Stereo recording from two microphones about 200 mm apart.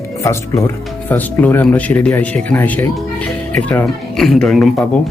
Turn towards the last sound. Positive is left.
turn(degrees=5)  # may be behind; listen again after turning